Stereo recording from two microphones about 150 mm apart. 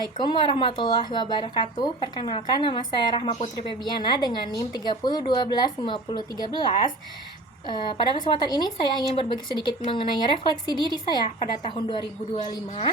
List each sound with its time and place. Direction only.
0.0 s speech: 30° left (ahead or behind)
7.7 s speech: 30° left (ahead or behind)